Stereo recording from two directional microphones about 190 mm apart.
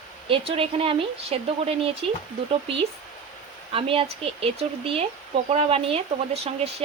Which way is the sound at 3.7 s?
30° right (ahead or behind).